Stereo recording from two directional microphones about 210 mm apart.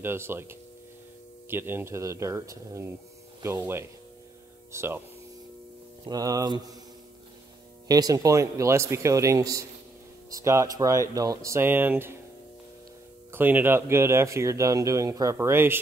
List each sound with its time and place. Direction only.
0.0 s speech: 10° right (ahead or behind)
6.0 s speech: 20° right (ahead or behind)
7.9 s speech: 15° right (ahead or behind)
13.3 s speech: 10° right (ahead or behind)